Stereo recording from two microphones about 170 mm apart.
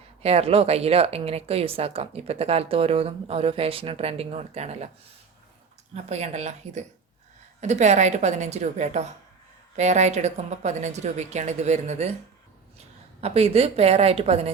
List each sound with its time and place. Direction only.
0.2 s a woman's voice: 35° right (ahead or behind)
5.9 s a woman's voice: 40° right (ahead or behind)
13.2 s a woman's voice: 35° right (ahead or behind)